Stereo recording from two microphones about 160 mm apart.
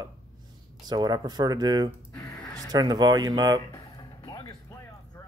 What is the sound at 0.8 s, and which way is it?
Speech, 25° right (ahead or behind).